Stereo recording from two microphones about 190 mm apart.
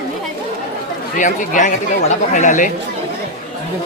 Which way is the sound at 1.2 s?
40° left (ahead or behind).